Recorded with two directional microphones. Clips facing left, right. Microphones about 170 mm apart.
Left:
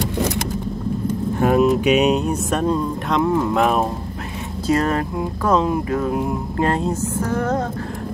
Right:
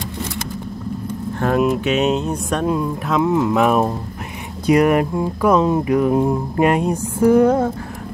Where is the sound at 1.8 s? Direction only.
15° left (ahead or behind).